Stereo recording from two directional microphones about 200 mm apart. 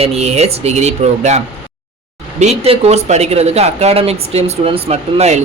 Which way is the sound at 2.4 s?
30° right (ahead or behind).